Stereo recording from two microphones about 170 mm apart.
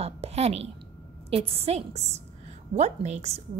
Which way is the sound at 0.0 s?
40° right (ahead or behind).